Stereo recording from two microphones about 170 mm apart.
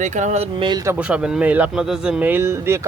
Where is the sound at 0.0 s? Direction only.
45° right (ahead or behind).